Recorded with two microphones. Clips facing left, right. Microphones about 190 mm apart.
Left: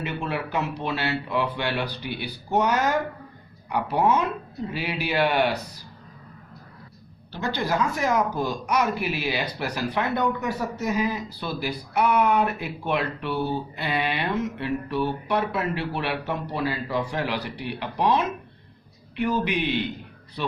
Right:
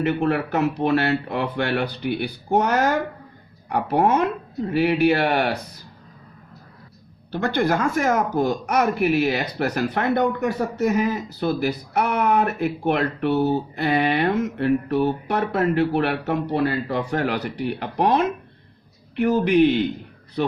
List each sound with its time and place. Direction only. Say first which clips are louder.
0.0 s speech: right 8 dB; 55° right (ahead or behind)
7.3 s speech: right 6 dB; 55° right (ahead or behind)